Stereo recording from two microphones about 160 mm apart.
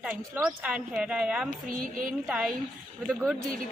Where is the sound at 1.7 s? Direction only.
60° right (ahead or behind).